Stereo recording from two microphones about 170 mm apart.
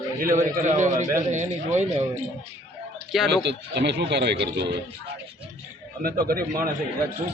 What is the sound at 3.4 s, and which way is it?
Speech, 90° right.